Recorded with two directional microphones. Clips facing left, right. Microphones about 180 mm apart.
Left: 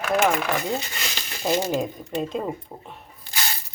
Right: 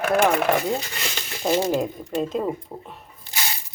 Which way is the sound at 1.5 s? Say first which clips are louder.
Right 2 dB; 5° right (ahead or behind).